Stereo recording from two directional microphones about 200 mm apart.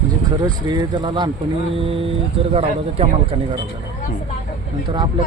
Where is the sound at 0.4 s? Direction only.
20° right (ahead or behind).